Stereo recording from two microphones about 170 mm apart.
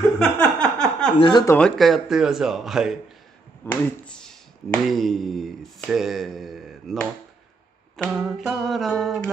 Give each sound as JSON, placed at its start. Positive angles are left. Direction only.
{"t": 0.2, "sound": "a sound", "side_deg": 5}
{"t": 1.2, "sound": "speech", "side_deg": 25}
{"t": 1.5, "sound": "speech", "side_deg": 5}
{"t": 8.2, "sound": "speech", "side_deg": 0}